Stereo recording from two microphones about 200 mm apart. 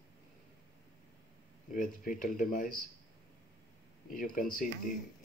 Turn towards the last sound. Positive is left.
turn(degrees=45)  # may be behind; listen again after turning